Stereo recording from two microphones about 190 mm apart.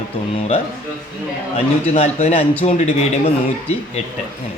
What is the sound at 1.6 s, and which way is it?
A man's voice, 35° left (ahead or behind).